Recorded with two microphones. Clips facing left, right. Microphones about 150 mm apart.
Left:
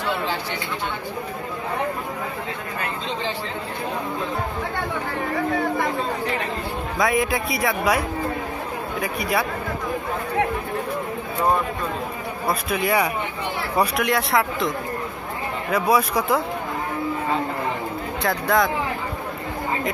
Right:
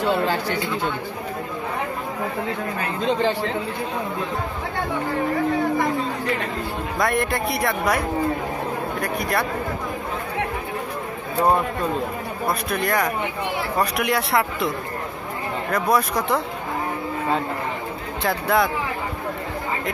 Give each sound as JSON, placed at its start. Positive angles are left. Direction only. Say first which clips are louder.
{"t": 0.2, "sound": "speech", "louder": "right 4 dB", "side_deg": -50}
{"t": 7.0, "sound": "speech", "louder": "left 1 dB", "side_deg": 0}
{"t": 9.0, "sound": "speech", "louder": "left 1 dB", "side_deg": 5}
{"t": 12.4, "sound": "speech", "louder": "left 1 dB", "side_deg": 5}
{"t": 15.7, "sound": "speech", "louder": "left 1 dB", "side_deg": 10}
{"t": 18.2, "sound": "speech", "louder": "even", "side_deg": 0}